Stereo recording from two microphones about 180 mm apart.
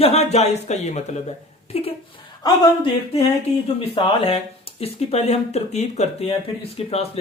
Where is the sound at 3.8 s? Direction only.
30° left (ahead or behind).